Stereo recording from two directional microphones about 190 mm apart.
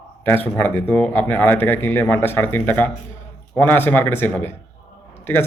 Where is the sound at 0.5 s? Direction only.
10° left (ahead or behind).